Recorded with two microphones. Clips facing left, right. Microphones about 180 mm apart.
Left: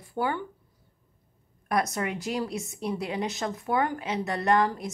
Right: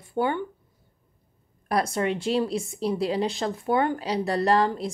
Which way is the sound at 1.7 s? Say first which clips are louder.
Right 3 dB; 30° right (ahead or behind).